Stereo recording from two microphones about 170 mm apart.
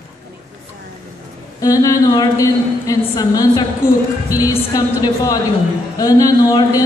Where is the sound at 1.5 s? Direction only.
20° left (ahead or behind).